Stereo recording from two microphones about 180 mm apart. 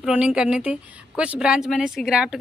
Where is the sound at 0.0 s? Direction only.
5° right (ahead or behind).